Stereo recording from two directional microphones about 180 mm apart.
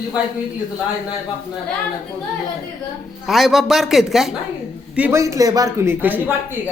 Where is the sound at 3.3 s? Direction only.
Centre (ahead or behind).